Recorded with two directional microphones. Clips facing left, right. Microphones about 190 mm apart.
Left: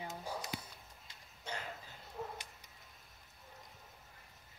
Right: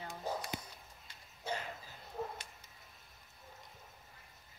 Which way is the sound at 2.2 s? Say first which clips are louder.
Right 3 dB; 40° right (ahead or behind).